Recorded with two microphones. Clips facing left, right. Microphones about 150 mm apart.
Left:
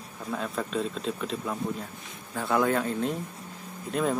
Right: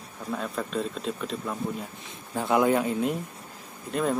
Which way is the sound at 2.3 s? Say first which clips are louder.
Right 3 dB; 20° right (ahead or behind).